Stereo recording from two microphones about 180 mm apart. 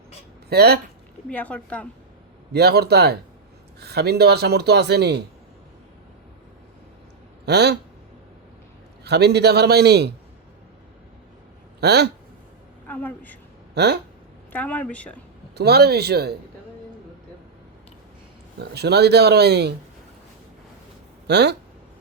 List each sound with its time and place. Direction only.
0.5 s speech: 60° right (ahead or behind)
1.3 s speech: 10° left (ahead or behind)
2.5 s speech: 65° right (ahead or behind)
7.4 s speech: 65° right (ahead or behind)
9.0 s speech: 65° right (ahead or behind)
11.8 s speech: 65° right (ahead or behind)
12.9 s speech: 10° left (ahead or behind)
13.7 s speech: 65° right (ahead or behind)
14.5 s speech: 10° left (ahead or behind)
15.5 s speech: 65° right (ahead or behind)
18.6 s speech: 65° right (ahead or behind)
21.2 s speech: 70° right (ahead or behind)